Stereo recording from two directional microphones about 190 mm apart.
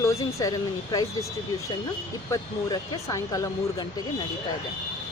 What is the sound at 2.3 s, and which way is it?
Speech, 15° left (ahead or behind).